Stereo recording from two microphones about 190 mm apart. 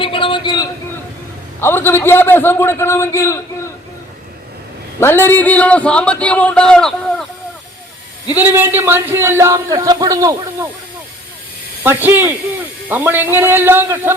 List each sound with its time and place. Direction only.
0.0 s a sound: 25° left (ahead or behind)
1.6 s a man's voice: 10° left (ahead or behind)
4.9 s a man's voice: 10° left (ahead or behind)
8.3 s speech: 10° right (ahead or behind)
11.8 s speech: 10° right (ahead or behind)